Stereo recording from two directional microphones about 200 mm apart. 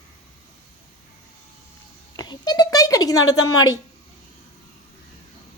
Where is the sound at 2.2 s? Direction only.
20° left (ahead or behind).